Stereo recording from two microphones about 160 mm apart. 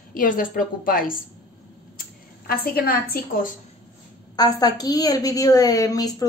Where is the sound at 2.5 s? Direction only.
70° left (ahead or behind).